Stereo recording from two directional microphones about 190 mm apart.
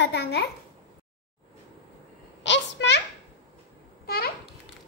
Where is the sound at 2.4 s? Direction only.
70° left (ahead or behind).